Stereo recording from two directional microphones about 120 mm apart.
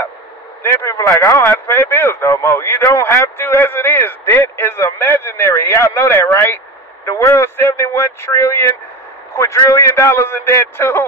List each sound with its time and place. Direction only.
0.6 s a man's voice: 20° left (ahead or behind)